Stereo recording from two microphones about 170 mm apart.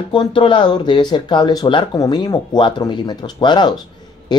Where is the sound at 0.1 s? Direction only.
30° left (ahead or behind).